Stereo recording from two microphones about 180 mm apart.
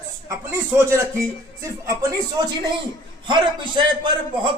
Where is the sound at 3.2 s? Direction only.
25° right (ahead or behind).